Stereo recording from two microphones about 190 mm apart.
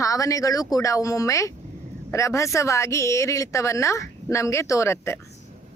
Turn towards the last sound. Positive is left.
turn(degrees=15)  # may be behind; listen again after turning